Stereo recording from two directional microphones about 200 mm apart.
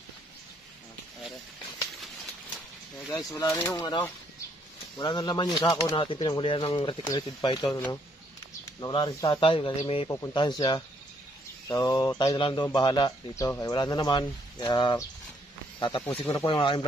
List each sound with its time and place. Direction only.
3.1 s speech: 15° left (ahead or behind)
4.9 s speech: 20° left (ahead or behind)
16.1 s speech: 10° left (ahead or behind)
16.4 s speech: 25° left (ahead or behind)